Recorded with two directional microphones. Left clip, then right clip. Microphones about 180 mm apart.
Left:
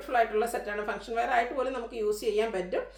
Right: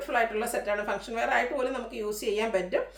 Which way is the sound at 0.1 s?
15° right (ahead or behind).